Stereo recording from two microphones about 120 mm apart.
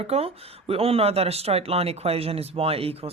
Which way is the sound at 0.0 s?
55° right (ahead or behind).